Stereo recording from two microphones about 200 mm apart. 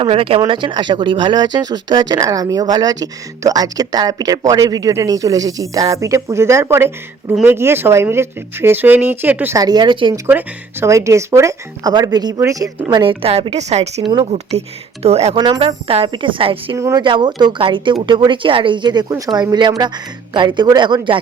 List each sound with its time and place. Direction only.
0.0 s speech: 30° right (ahead or behind)
10.2 s speech: 10° right (ahead or behind); by 15.4 s 30° right (ahead or behind)
15.4 s speech: 20° right (ahead or behind)
16.7 s speech: 15° right (ahead or behind)